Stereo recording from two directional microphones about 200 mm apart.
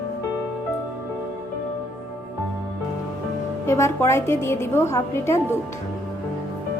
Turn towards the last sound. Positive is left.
turn(degrees=10)  # may be behind; listen again after turning